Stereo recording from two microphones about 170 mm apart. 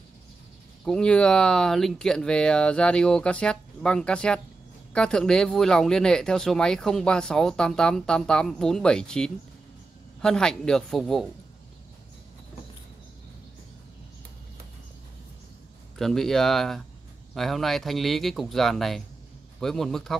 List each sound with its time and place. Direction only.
0.8 s speech: 5° left (ahead or behind)
16.0 s speech: centre (ahead or behind)